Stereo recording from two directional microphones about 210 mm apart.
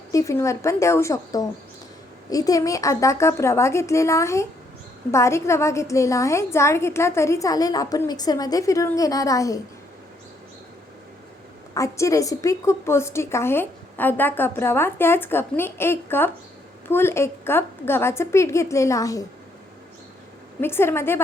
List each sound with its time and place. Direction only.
0.1 s a woman's voice: 15° left (ahead or behind)
11.7 s a woman's voice: 15° left (ahead or behind)
20.6 s a woman's voice: 10° left (ahead or behind)